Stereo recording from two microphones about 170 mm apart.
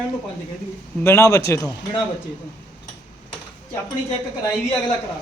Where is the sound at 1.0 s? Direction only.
15° left (ahead or behind).